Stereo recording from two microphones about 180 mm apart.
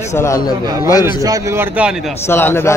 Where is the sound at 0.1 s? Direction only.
15° left (ahead or behind).